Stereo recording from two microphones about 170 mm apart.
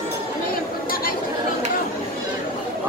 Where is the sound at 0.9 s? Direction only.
60° left (ahead or behind).